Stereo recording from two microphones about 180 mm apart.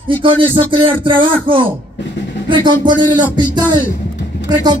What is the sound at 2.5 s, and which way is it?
A man's voice, 25° right (ahead or behind).